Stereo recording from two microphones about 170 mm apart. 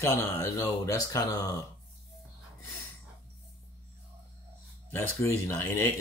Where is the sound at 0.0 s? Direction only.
20° left (ahead or behind).